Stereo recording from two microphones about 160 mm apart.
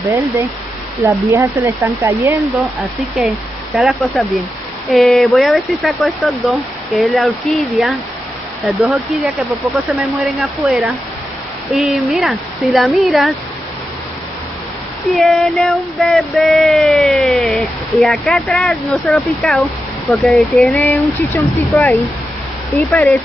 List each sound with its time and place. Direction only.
1.0 s speech: 20° right (ahead or behind)
3.7 s female singing: centre (ahead or behind)
15.1 s female singing: centre (ahead or behind)
20.8 s speech: 10° left (ahead or behind)
22.8 s female singing: 5° left (ahead or behind)